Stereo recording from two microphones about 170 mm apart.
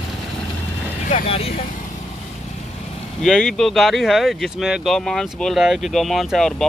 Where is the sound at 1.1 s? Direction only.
35° left (ahead or behind).